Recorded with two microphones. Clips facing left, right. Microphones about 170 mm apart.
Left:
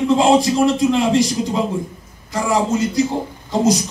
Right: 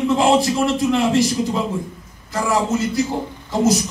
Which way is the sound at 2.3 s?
20° left (ahead or behind).